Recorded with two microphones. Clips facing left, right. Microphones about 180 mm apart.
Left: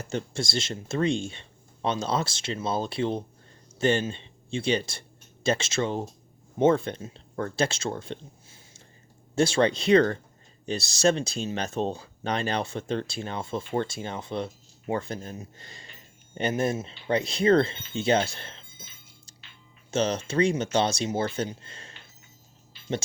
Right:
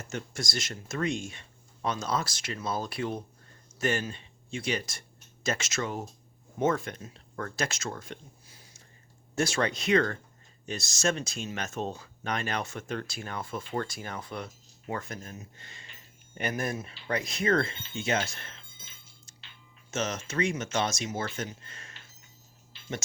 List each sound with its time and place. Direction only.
0.0 s speech: 30° left (ahead or behind)
19.9 s speech: 30° left (ahead or behind)